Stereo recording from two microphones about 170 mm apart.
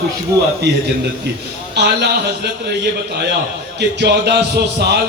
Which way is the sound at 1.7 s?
80° right.